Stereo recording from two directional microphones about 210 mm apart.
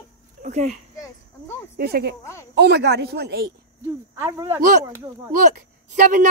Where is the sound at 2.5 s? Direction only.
50° right (ahead or behind).